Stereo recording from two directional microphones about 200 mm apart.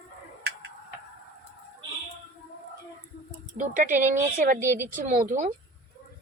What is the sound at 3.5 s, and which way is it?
Speech, 40° right (ahead or behind).